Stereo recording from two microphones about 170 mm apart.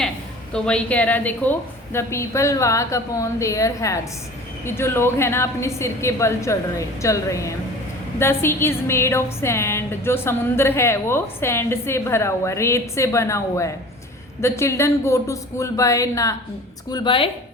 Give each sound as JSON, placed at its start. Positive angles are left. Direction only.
{"t": 0.5, "sound": "a woman's voice", "side_deg": 5}